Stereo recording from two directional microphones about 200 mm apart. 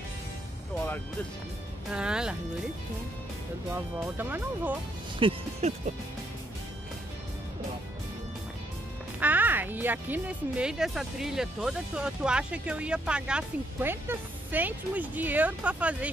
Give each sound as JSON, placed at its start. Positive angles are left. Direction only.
{"t": 1.9, "sound": "speech", "side_deg": -5}
{"t": 3.7, "sound": "speech", "side_deg": -10}
{"t": 5.2, "sound": "speech", "side_deg": -35}
{"t": 9.2, "sound": "speech", "side_deg": -10}